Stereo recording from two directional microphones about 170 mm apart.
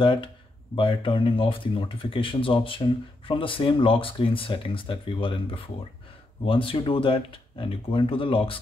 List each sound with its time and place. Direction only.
0.0 s speech: 30° left (ahead or behind)